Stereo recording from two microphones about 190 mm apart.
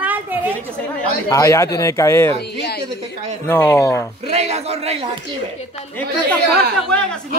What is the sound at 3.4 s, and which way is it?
Speech, 10° left (ahead or behind).